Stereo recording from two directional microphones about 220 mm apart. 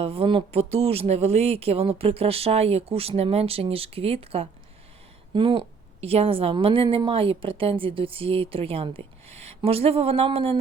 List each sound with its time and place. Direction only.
0.0 s a woman's voice: 25° right (ahead or behind)